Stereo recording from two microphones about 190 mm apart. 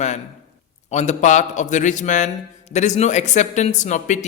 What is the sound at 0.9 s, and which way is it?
A man's voice, 40° left (ahead or behind).